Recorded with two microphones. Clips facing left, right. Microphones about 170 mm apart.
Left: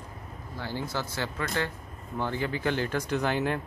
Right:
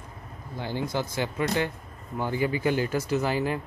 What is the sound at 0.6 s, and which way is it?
Speech, 15° right (ahead or behind).